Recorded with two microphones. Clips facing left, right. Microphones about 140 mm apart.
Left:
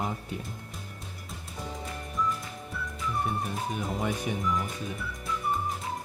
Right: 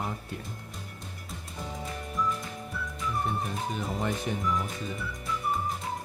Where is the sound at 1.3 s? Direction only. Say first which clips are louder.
Even; centre (ahead or behind).